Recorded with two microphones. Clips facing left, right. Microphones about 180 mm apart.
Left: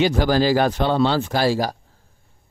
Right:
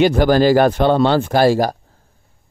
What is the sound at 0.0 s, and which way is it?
A man's voice, 55° right (ahead or behind).